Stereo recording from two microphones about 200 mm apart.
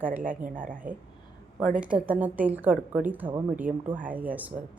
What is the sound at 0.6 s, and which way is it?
Speech, 40° right (ahead or behind).